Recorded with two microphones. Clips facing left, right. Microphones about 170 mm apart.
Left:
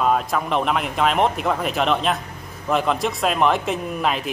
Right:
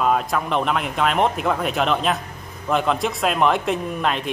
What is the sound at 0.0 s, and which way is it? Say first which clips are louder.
Speech: even; centre (ahead or behind).